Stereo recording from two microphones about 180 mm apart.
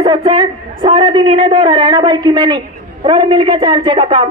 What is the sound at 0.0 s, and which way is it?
A man's voice, 30° right (ahead or behind).